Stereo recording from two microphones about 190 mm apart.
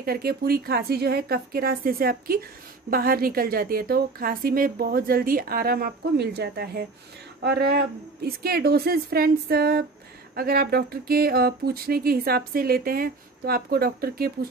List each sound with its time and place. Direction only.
0.0 s a woman's voice: 55° right (ahead or behind)